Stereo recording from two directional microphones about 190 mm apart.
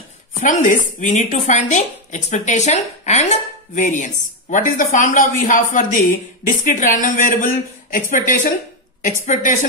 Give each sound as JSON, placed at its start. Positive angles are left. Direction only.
{"t": 0.4, "sound": "speech", "side_deg": 40}